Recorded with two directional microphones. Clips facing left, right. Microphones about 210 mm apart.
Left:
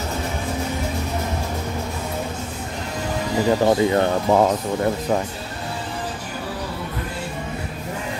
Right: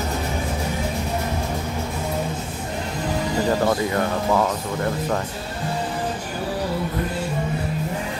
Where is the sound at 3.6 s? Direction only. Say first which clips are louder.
Left 4 dB; 25° left (ahead or behind).